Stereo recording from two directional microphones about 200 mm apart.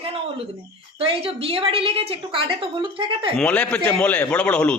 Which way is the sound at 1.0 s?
25° right (ahead or behind).